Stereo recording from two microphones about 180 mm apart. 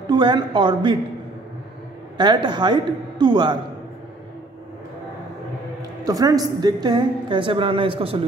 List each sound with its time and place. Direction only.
0.0 s speech: 25° right (ahead or behind)
2.1 s a woman's voice: 25° right (ahead or behind)
6.0 s a woman's voice: 20° right (ahead or behind)